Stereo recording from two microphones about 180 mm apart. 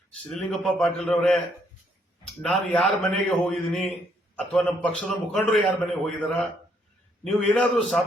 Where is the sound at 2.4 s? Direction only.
5° left (ahead or behind).